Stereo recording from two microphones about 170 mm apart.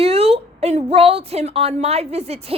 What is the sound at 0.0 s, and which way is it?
A woman's voice, 35° right (ahead or behind).